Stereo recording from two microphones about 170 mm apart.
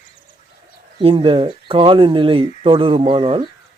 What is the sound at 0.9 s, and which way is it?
Speech, 30° right (ahead or behind).